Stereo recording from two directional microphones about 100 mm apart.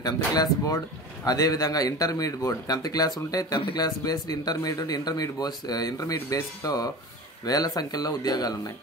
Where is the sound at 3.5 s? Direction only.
50° left (ahead or behind).